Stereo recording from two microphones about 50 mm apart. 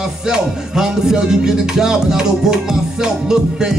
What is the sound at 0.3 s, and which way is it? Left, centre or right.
Music, centre.